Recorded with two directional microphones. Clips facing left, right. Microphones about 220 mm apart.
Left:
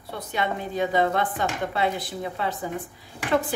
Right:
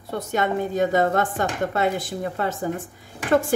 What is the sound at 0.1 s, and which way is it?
Speech, 45° right (ahead or behind).